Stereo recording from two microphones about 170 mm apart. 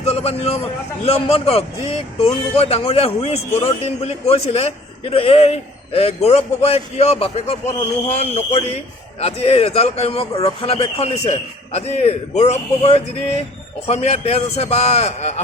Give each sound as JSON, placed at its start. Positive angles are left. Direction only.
{"t": 0.0, "sound": "a man's voice", "side_deg": 35}